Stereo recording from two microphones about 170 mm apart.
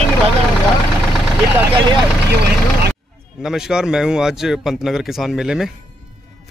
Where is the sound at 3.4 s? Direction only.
5° right (ahead or behind).